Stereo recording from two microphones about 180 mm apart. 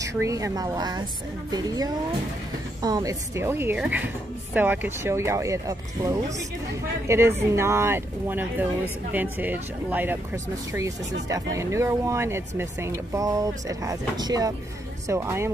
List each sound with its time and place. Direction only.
0.0 s speech: 15° right (ahead or behind)